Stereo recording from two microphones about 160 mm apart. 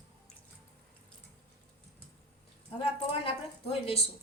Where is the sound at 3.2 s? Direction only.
35° left (ahead or behind).